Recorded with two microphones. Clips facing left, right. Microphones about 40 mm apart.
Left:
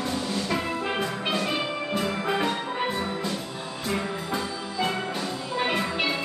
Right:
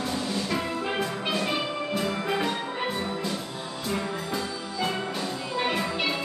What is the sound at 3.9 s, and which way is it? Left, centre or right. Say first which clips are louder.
Music: left 1 dB; centre.